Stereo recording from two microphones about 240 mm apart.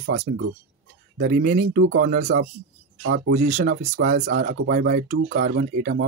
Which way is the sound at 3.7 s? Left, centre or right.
Right.